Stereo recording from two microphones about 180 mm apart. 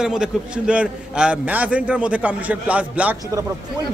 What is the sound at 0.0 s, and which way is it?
A man's voice, 5° right (ahead or behind).